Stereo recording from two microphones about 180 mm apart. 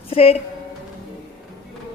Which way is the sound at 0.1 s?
35° left (ahead or behind).